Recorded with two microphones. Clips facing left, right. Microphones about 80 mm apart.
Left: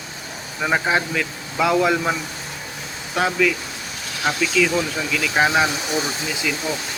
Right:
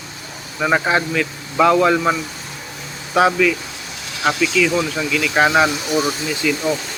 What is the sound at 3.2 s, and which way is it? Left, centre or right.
Speech, centre.